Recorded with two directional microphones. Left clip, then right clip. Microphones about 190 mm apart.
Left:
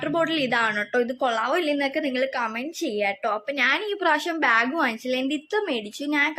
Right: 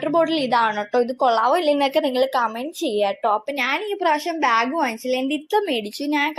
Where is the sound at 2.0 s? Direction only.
5° left (ahead or behind).